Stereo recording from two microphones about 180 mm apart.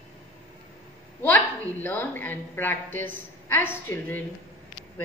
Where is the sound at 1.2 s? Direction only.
10° left (ahead or behind).